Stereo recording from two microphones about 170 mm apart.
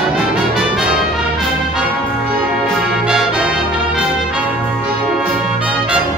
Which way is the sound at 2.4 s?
5° right (ahead or behind).